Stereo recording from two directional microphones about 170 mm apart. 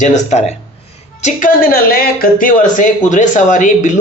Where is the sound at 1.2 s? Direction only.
50° left (ahead or behind).